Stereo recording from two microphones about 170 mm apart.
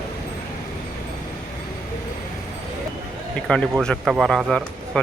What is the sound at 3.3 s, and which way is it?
A man's voice, 5° left (ahead or behind).